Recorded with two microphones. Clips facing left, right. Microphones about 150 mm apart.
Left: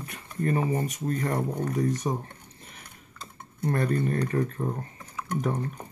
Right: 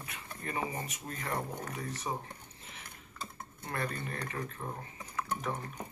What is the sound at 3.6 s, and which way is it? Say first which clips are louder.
Speech: left 12 dB; 45° left (ahead or behind).